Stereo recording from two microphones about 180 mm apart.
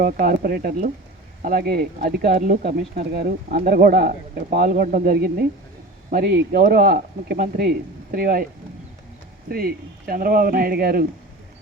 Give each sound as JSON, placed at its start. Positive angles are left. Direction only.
{"t": 0.0, "sound": "speech", "side_deg": -50}
{"t": 9.5, "sound": "speech", "side_deg": -55}